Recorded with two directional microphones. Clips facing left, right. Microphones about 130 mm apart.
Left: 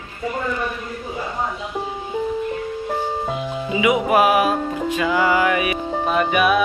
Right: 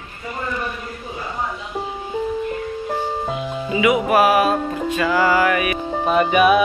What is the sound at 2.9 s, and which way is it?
Music, centre (ahead or behind).